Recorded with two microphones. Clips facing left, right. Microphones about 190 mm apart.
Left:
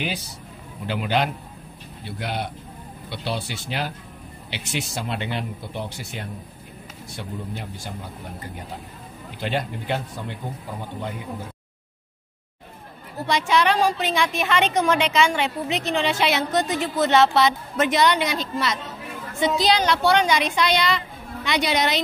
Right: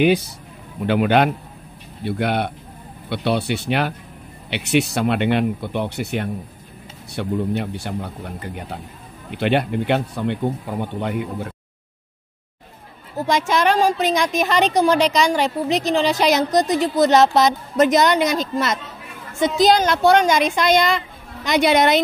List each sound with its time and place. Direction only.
0.8 s speech: 60° right (ahead or behind)
9.4 s speech: 65° right (ahead or behind)
13.2 s a woman's voice: 45° right (ahead or behind)